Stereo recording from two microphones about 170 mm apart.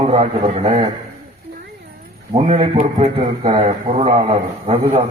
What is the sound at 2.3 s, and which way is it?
A man's voice, 35° right (ahead or behind).